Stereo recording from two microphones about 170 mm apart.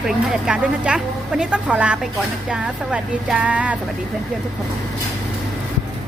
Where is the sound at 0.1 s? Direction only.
5° right (ahead or behind).